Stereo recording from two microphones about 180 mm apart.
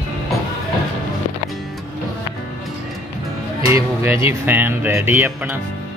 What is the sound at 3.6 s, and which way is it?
Music, 15° right (ahead or behind).